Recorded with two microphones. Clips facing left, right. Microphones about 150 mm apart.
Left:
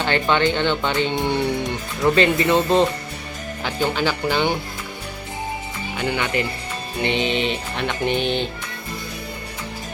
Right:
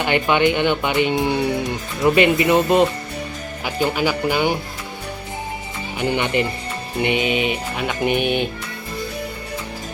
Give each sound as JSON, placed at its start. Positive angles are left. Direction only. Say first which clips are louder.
{"t": 0.0, "sound": "music", "louder": "right 2 dB", "side_deg": -15}
{"t": 6.0, "sound": "speech", "louder": "right 3 dB", "side_deg": -20}
{"t": 7.0, "sound": "music", "louder": "right 2 dB", "side_deg": -10}